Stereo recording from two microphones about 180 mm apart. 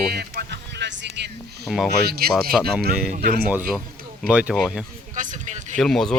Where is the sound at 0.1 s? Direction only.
60° right (ahead or behind).